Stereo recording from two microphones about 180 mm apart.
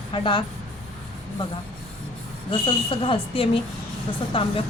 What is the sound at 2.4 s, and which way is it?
Speech, 30° left (ahead or behind).